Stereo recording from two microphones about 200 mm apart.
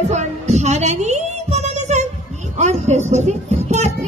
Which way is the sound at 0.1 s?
35° right (ahead or behind).